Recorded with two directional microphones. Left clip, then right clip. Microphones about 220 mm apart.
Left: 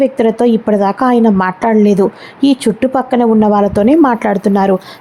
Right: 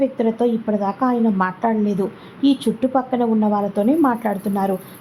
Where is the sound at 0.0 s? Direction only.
35° left (ahead or behind).